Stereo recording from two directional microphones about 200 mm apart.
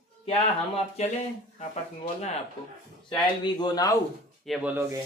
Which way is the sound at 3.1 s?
20° left (ahead or behind).